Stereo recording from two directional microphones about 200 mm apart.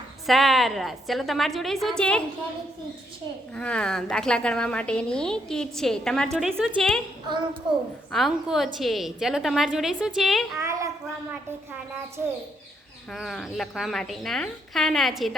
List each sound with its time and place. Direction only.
0.3 s a woman's voice: centre (ahead or behind)
3.5 s a woman's voice: 5° left (ahead or behind)
8.1 s a woman's voice: centre (ahead or behind)
10.6 s a child's voice: 15° right (ahead or behind); by 15.4 s centre (ahead or behind)